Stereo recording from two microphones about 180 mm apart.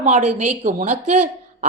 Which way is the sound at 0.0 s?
40° right (ahead or behind).